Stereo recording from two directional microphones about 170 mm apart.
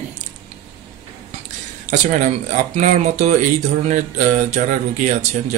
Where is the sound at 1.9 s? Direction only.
50° right (ahead or behind).